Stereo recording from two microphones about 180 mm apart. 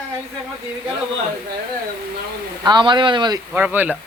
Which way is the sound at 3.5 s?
10° right (ahead or behind).